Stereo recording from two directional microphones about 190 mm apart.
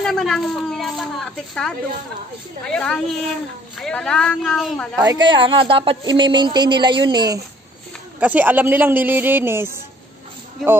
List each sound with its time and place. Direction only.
0.0 s speech: centre (ahead or behind)
5.0 s speech: 20° right (ahead or behind)
8.2 s a man's voice: 10° right (ahead or behind)